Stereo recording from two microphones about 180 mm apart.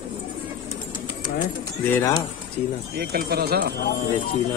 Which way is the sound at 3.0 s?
60° right (ahead or behind).